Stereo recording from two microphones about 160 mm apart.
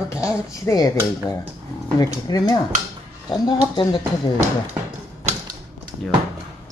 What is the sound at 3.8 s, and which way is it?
Speech, 30° left (ahead or behind).